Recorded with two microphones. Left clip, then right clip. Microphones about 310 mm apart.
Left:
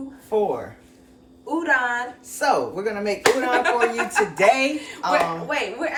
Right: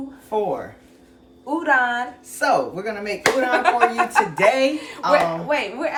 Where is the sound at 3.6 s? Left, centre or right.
Centre.